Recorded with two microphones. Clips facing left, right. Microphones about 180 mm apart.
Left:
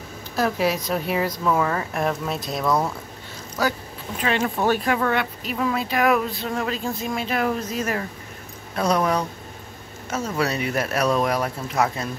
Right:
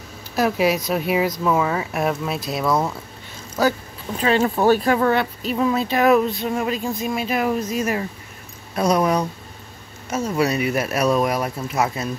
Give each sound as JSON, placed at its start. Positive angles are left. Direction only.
{"t": 0.4, "sound": "speech", "side_deg": -10}
{"t": 3.6, "sound": "speech", "side_deg": -25}
{"t": 6.4, "sound": "speech", "side_deg": -15}